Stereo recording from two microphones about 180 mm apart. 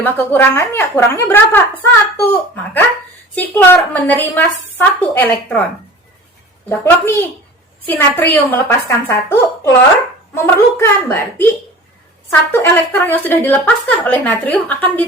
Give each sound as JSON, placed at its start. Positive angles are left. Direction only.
{"t": 0.0, "sound": "speech", "side_deg": 10}
{"t": 6.7, "sound": "speech", "side_deg": 15}